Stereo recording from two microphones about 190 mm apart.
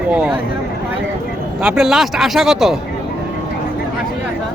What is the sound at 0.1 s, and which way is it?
Speech, 5° right (ahead or behind).